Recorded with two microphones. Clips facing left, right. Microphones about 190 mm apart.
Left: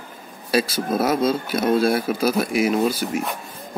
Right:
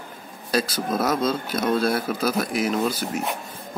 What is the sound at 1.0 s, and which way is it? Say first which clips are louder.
Speech: left 3 dB; 10° left (ahead or behind).